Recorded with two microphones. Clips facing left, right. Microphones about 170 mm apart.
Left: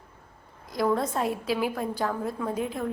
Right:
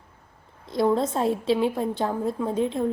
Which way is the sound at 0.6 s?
25° right (ahead or behind).